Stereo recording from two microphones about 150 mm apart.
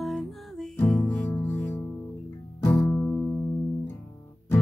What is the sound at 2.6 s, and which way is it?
Music, 15° left (ahead or behind).